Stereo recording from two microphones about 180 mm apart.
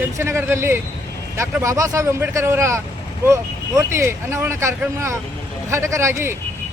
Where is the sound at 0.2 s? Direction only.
15° right (ahead or behind).